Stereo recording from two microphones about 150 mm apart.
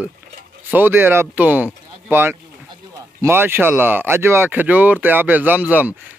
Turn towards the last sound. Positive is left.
turn(degrees=-10)  # may be behind; listen again after turning